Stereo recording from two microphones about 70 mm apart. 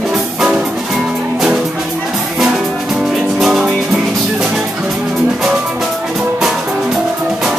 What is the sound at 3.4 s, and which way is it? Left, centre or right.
Music, centre.